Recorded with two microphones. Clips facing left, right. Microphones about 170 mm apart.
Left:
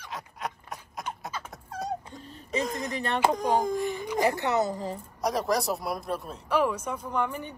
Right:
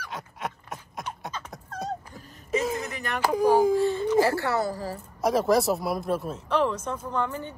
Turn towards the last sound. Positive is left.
turn(degrees=15)  # may be behind; listen again after turning